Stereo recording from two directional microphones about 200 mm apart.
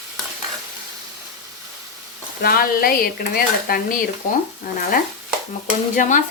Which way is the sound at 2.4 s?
50° left (ahead or behind).